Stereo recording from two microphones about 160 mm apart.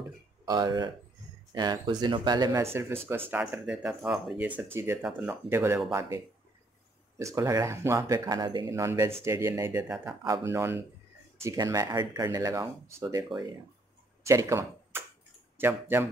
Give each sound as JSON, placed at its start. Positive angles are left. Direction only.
{"t": 0.5, "sound": "speech", "side_deg": -25}
{"t": 5.5, "sound": "speech", "side_deg": -15}
{"t": 9.8, "sound": "speech", "side_deg": -5}
{"t": 10.2, "sound": "speech", "side_deg": -20}
{"t": 14.2, "sound": "a sound", "side_deg": -20}
{"t": 15.6, "sound": "speech", "side_deg": -15}